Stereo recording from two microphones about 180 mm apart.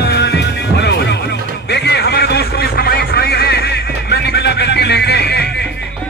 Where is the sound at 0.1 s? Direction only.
70° left (ahead or behind).